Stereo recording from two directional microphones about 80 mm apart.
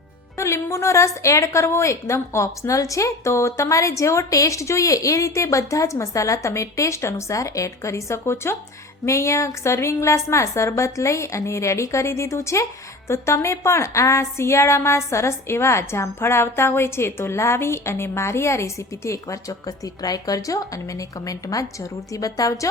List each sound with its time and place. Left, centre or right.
0.3 s a woman's voice: left